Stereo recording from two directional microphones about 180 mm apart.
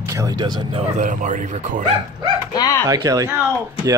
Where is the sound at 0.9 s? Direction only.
45° right (ahead or behind).